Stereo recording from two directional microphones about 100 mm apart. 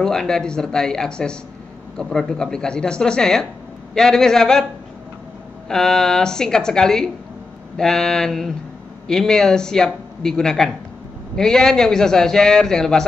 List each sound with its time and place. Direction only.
0.0 s a man's voice: 5° left (ahead or behind)
5.7 s a man's voice: 5° left (ahead or behind)